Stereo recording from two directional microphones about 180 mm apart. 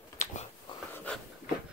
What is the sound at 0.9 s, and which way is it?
Dog, 10° left (ahead or behind).